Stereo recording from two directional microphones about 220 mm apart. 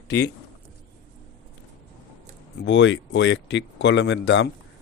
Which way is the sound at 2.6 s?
55° left (ahead or behind).